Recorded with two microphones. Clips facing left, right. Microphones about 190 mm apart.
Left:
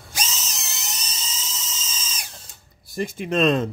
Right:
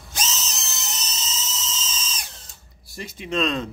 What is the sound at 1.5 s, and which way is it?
Dental drill, 10° left (ahead or behind).